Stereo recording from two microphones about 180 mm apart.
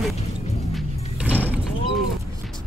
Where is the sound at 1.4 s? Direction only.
10° right (ahead or behind).